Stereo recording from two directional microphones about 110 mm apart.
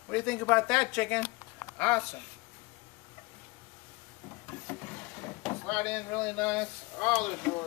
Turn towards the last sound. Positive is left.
turn(degrees=10)  # may be behind; listen again after turning